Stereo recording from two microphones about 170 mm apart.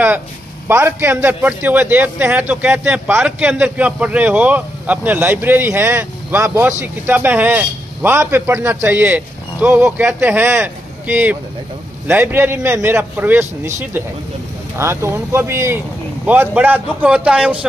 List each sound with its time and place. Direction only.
0.7 s a man's voice: 15° right (ahead or behind)